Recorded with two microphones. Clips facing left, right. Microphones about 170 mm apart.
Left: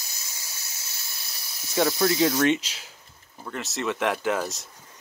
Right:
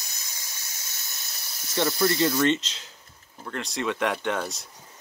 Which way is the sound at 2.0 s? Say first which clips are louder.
Even; centre (ahead or behind).